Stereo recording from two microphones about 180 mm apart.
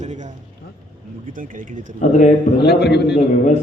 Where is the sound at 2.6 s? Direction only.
65° left (ahead or behind).